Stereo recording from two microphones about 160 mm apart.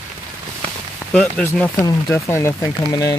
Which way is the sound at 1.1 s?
5° left (ahead or behind).